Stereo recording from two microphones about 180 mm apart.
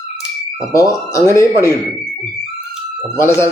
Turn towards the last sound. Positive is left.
turn(degrees=15)  # may be behind; listen again after turning